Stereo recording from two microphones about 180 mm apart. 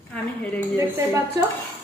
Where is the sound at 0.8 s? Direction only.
15° right (ahead or behind).